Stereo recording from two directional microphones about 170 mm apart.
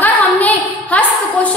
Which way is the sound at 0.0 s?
10° left (ahead or behind).